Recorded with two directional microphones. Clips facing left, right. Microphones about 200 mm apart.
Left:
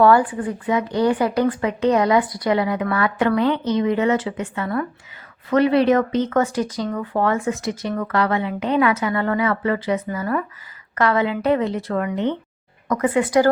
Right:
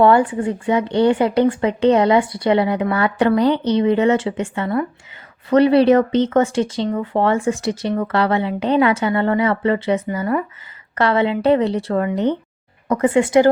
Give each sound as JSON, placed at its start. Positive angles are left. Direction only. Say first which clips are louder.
{"t": 0.0, "sound": "a woman's voice", "louder": "right 2 dB", "side_deg": -25}
{"t": 12.9, "sound": "speech", "louder": "right 4 dB", "side_deg": -25}